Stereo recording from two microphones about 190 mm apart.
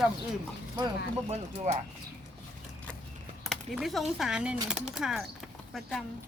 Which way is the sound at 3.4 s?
Centre (ahead or behind).